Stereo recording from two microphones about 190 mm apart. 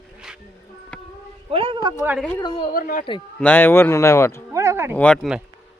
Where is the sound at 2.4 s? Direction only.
25° left (ahead or behind).